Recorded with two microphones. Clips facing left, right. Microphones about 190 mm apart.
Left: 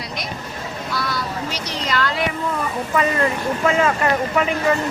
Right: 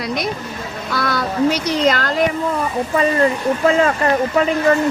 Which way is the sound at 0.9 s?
55° right (ahead or behind).